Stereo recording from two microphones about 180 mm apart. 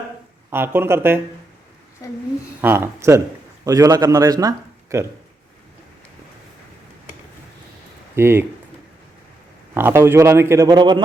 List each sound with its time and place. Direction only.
0.5 s a man's voice: 10° right (ahead or behind)
2.6 s a man's voice: 10° right (ahead or behind)
8.1 s a man's voice: 15° right (ahead or behind)
9.7 s a man's voice: 10° right (ahead or behind)